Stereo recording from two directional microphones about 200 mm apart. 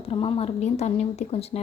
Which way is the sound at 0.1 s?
25° left (ahead or behind).